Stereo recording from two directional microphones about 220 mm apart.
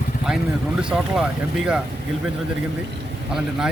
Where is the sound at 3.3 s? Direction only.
5° right (ahead or behind).